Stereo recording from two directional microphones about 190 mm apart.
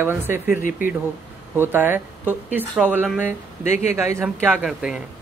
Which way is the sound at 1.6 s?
10° right (ahead or behind).